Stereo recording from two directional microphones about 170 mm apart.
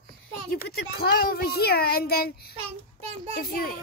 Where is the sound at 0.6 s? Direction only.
65° left (ahead or behind).